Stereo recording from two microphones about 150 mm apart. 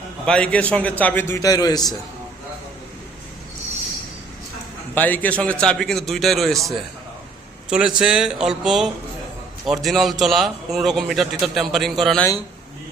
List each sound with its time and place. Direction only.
0.3 s a man's voice: 5° left (ahead or behind)
1.4 s a man's voice: 25° left (ahead or behind)
4.9 s a man's voice: 10° left (ahead or behind)